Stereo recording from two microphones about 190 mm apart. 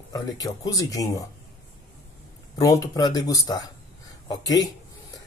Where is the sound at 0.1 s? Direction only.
20° left (ahead or behind).